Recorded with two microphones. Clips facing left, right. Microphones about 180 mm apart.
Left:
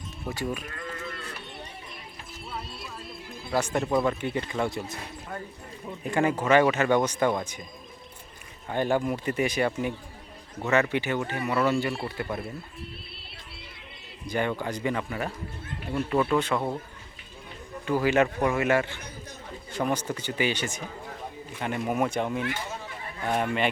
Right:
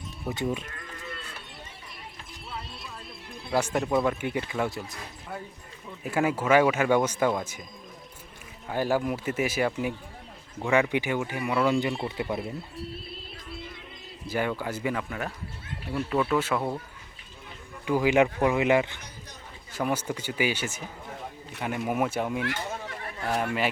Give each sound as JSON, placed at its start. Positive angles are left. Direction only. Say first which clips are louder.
{"t": 0.3, "sound": "speech", "louder": "right 2 dB", "side_deg": -20}
{"t": 3.2, "sound": "music", "louder": "left 1 dB", "side_deg": 0}
{"t": 3.8, "sound": "speech", "louder": "left 2 dB", "side_deg": 0}
{"t": 8.7, "sound": "speech", "louder": "left 1 dB", "side_deg": -5}
{"t": 14.3, "sound": "speech", "louder": "left 1 dB", "side_deg": -5}
{"t": 17.8, "sound": "speech", "louder": "right 1 dB", "side_deg": -15}